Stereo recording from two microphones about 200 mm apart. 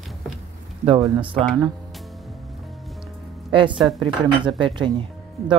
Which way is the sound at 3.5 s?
25° right (ahead or behind).